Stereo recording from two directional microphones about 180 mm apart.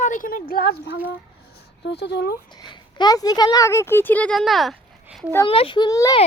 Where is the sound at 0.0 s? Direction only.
50° left (ahead or behind).